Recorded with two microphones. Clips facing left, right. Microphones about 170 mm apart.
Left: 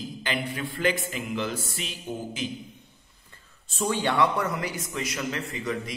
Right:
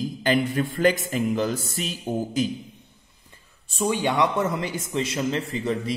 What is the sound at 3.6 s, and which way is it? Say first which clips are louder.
A man's voice: right 3 dB; 15° right (ahead or behind).